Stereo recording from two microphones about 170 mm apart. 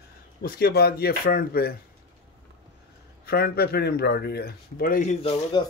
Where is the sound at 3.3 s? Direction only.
65° left (ahead or behind).